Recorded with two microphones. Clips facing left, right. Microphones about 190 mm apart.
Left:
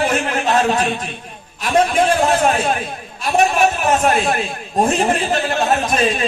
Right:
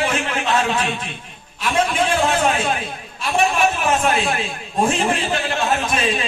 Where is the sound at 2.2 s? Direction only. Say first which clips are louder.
Left 3 dB; 40° left (ahead or behind).